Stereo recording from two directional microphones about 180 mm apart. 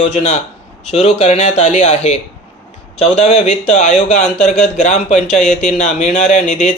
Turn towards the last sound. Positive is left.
turn(degrees=40)  # may be behind; listen again after turning